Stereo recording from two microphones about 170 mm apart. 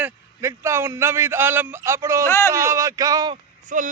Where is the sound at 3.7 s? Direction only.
50° right (ahead or behind).